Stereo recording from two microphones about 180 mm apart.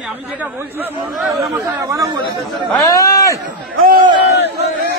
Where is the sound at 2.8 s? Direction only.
20° left (ahead or behind).